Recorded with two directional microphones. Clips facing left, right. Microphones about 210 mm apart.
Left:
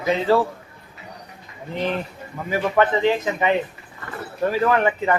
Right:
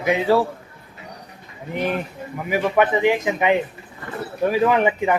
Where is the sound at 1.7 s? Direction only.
15° right (ahead or behind).